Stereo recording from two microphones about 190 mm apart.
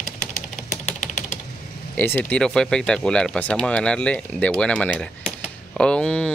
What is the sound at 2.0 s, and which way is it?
Speech, 10° left (ahead or behind).